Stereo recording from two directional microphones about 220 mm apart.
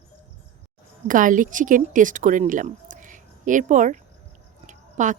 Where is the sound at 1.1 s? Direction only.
35° right (ahead or behind).